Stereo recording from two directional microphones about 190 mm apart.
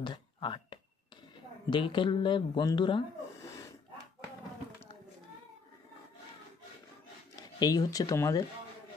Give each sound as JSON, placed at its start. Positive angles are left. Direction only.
{"t": 0.0, "sound": "a sound", "side_deg": 25}
{"t": 1.7, "sound": "speech", "side_deg": 25}
{"t": 7.5, "sound": "speech", "side_deg": 20}